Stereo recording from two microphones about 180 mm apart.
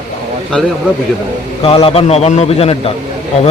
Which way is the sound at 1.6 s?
30° left (ahead or behind).